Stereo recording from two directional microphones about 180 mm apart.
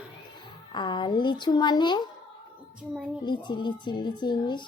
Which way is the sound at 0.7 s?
25° left (ahead or behind).